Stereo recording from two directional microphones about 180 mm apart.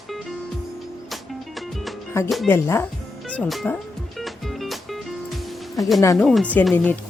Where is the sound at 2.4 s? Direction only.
15° left (ahead or behind).